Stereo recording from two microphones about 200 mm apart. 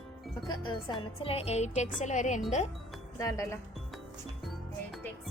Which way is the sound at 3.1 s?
15° left (ahead or behind).